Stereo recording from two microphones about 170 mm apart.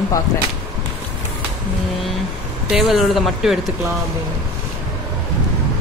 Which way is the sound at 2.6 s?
Centre (ahead or behind).